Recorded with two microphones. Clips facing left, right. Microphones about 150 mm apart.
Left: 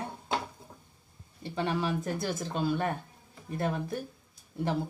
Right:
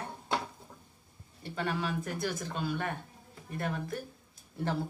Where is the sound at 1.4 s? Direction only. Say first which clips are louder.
Left 3 dB; 25° left (ahead or behind).